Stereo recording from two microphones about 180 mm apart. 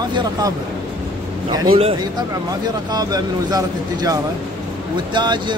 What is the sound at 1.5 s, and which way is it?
Speech, 25° right (ahead or behind).